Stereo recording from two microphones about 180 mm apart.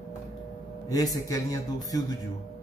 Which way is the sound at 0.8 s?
20° left (ahead or behind).